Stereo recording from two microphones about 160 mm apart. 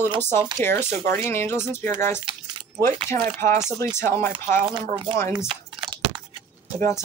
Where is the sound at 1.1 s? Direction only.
15° left (ahead or behind).